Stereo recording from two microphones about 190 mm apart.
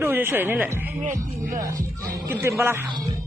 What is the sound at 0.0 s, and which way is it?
Speech, 10° right (ahead or behind).